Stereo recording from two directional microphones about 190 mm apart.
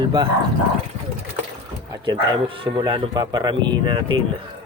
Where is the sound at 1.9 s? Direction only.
25° right (ahead or behind).